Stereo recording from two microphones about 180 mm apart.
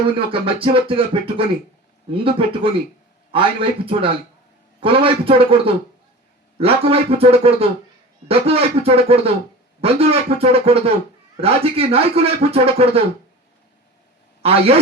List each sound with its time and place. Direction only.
0.2 s music: 30° right (ahead or behind)
4.8 s speech: 30° right (ahead or behind)
14.4 s speech: 35° right (ahead or behind)